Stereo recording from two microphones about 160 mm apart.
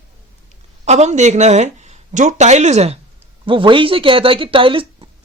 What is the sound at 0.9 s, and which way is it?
Speech, 45° right (ahead or behind).